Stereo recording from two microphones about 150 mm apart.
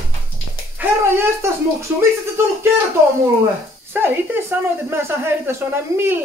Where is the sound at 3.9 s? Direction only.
15° right (ahead or behind).